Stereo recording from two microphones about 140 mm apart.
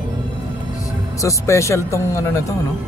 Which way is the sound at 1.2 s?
20° left (ahead or behind).